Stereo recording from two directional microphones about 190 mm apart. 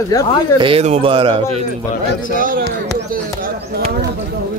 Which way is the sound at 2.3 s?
50° right (ahead or behind).